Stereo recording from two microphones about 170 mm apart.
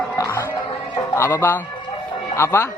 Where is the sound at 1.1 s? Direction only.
15° left (ahead or behind).